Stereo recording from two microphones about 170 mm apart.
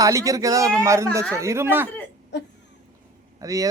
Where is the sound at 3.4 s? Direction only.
20° right (ahead or behind).